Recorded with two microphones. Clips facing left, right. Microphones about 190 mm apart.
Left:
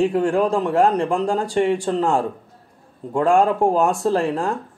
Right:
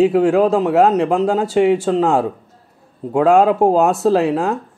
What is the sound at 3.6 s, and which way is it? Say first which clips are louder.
Speech: right 4 dB; 5° right (ahead or behind).